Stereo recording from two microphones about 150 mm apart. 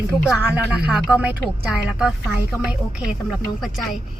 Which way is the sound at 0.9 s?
5° right (ahead or behind).